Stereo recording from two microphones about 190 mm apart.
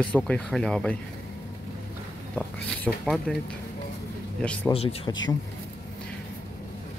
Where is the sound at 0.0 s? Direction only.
5° left (ahead or behind).